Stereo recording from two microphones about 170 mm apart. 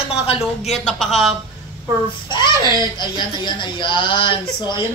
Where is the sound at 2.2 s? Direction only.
25° left (ahead or behind).